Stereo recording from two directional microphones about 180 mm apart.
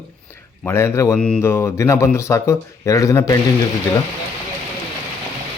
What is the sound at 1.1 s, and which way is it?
Speech, 5° left (ahead or behind).